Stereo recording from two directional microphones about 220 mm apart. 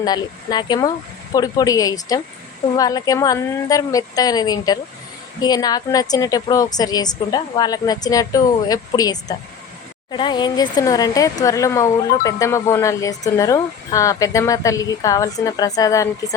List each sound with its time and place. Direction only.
0.0 s speech: 20° left (ahead or behind)